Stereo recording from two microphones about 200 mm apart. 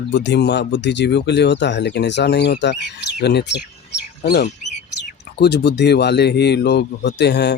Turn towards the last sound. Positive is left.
turn(degrees=60)  # may be behind; listen again after turning